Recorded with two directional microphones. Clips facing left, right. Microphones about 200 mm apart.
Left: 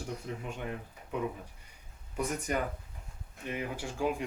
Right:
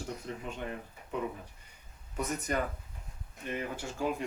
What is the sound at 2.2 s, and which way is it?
Speech, 10° left (ahead or behind).